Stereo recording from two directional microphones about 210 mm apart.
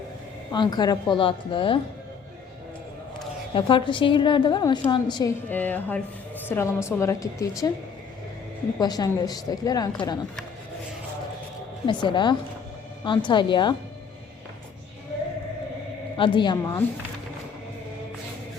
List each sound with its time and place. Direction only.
0.5 s a woman's voice: 20° left (ahead or behind)
3.5 s a woman's voice: 25° left (ahead or behind)
5.5 s a woman's voice: 10° left (ahead or behind)
8.8 s a woman's voice: 20° left (ahead or behind)
12.0 s a woman's voice: 20° left (ahead or behind)
16.1 s a woman's voice: 25° left (ahead or behind)